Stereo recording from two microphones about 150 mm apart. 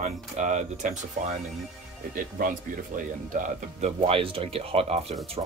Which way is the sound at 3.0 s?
60° right (ahead or behind).